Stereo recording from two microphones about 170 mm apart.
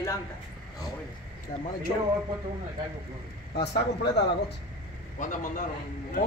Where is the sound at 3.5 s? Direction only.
75° left (ahead or behind).